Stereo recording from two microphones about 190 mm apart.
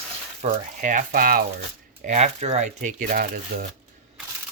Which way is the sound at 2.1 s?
35° right (ahead or behind).